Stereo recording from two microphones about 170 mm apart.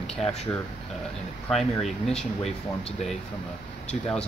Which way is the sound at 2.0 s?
5° left (ahead or behind).